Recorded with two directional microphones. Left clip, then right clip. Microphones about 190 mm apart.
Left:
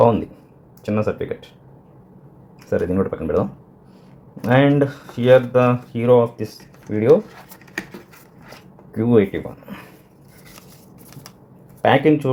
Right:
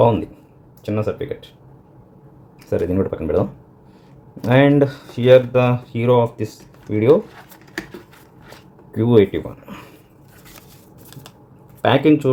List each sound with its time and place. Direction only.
0.9 s speech: 10° left (ahead or behind)
2.6 s speech: 5° right (ahead or behind)
6.3 s speech: 40° left (ahead or behind)
7.1 s a sound: 5° right (ahead or behind)
9.0 s speech: 20° right (ahead or behind)
11.8 s speech: 10° right (ahead or behind)